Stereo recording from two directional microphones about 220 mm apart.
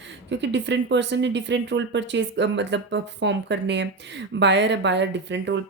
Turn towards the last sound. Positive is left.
turn(degrees=-50)  # may be behind; listen again after turning